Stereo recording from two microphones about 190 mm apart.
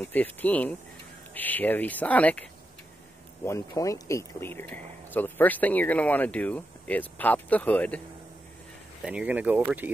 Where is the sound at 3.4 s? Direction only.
15° left (ahead or behind).